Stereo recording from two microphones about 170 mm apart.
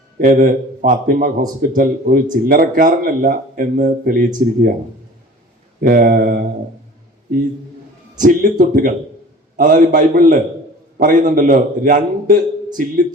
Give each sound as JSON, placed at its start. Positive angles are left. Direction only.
{"t": 0.2, "sound": "a man's voice", "side_deg": -55}
{"t": 5.8, "sound": "a man's voice", "side_deg": -55}
{"t": 8.2, "sound": "a man's voice", "side_deg": -55}